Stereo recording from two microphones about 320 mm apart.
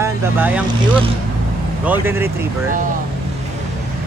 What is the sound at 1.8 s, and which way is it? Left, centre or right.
Speech, centre.